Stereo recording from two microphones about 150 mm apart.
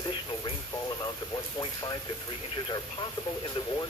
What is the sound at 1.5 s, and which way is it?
Speech, 25° left (ahead or behind).